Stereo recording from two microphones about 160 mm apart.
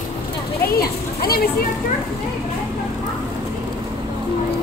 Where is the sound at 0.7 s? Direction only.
70° left (ahead or behind).